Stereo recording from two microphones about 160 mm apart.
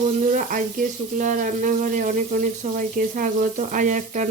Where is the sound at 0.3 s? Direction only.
55° right (ahead or behind).